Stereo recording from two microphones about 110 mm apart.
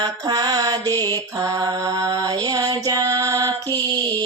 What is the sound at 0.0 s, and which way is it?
Mantra, 40° right (ahead or behind).